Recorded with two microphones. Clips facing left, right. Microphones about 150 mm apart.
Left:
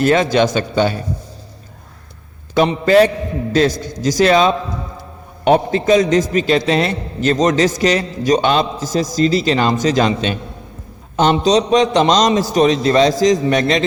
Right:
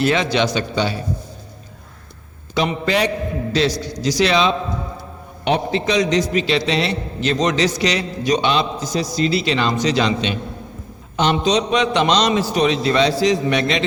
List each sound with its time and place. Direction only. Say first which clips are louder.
0.0 s a man's voice: left 4 dB; 45° left (ahead or behind)
2.8 s a man's voice: left 8 dB; 45° left (ahead or behind)